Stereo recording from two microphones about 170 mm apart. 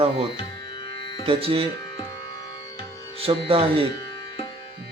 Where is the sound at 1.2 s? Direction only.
35° right (ahead or behind).